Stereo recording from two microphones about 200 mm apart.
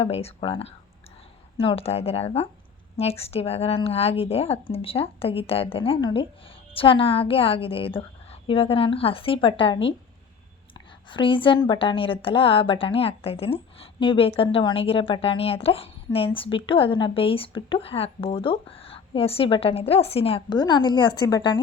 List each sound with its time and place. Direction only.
0.0 s a woman's voice: 30° left (ahead or behind)